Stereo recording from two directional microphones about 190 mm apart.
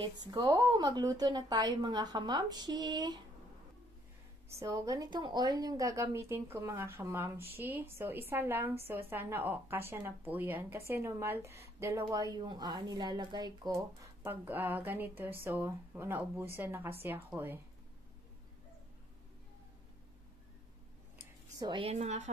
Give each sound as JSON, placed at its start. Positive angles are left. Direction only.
{"t": 0.0, "sound": "a woman's voice", "side_deg": -20}
{"t": 4.6, "sound": "a woman's voice", "side_deg": -15}
{"t": 21.5, "sound": "a woman's voice", "side_deg": -25}